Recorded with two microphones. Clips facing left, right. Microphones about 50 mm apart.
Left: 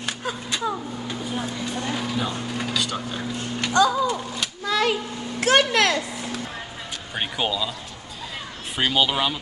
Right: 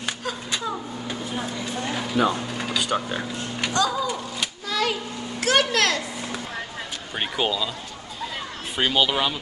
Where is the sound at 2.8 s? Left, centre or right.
Centre.